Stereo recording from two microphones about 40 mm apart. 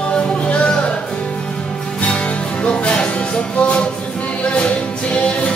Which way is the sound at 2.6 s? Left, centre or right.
Left.